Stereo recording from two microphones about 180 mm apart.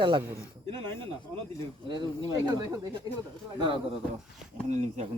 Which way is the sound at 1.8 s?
25° right (ahead or behind).